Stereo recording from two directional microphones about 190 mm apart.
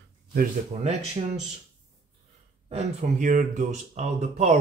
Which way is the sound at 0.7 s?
35° right (ahead or behind).